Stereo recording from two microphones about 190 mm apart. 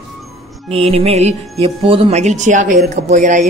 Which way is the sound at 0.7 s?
30° right (ahead or behind).